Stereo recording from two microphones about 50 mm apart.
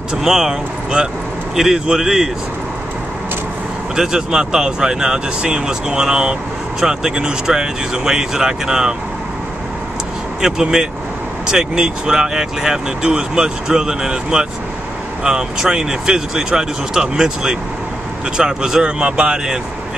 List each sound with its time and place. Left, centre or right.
0.1 s speech: centre
3.9 s speech: centre
10.4 s speech: centre